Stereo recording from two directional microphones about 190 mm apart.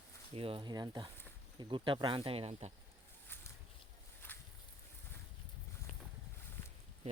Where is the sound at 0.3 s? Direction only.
30° right (ahead or behind).